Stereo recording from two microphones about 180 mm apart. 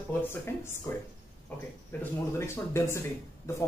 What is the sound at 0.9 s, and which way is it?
A man's voice, 15° left (ahead or behind).